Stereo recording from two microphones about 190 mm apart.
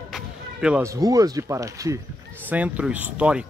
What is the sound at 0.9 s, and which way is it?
Speech, 20° right (ahead or behind).